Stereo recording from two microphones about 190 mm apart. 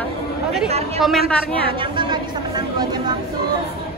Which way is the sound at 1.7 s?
25° right (ahead or behind).